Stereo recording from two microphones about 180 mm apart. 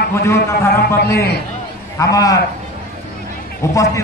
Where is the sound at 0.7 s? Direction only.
55° left (ahead or behind).